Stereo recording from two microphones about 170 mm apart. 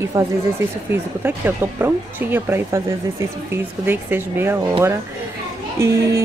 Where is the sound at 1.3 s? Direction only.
10° right (ahead or behind).